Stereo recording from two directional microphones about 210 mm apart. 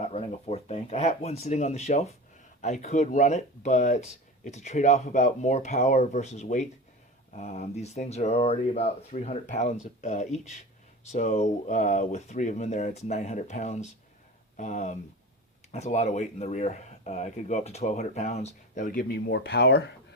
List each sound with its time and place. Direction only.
0.0 s speech: 30° left (ahead or behind); by 19.8 s 50° left (ahead or behind)